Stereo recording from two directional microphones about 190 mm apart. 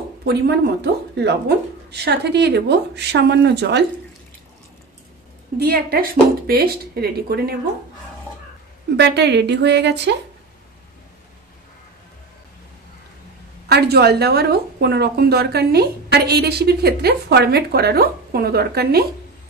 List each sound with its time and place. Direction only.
0.2 s speech: 60° right (ahead or behind)
5.6 s speech: 55° right (ahead or behind)
8.9 s speech: 65° right (ahead or behind)
13.7 s speech: 55° right (ahead or behind)